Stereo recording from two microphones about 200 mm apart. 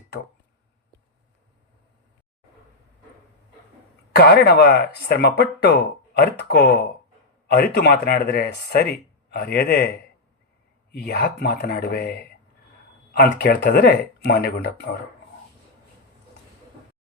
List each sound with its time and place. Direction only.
4.1 s speech: 50° left (ahead or behind)
10.9 s speech: 55° left (ahead or behind)